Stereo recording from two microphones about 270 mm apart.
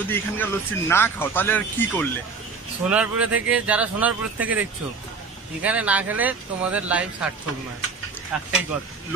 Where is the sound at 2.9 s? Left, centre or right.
Centre.